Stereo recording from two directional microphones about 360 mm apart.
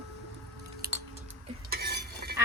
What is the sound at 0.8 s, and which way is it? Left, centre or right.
Music, right.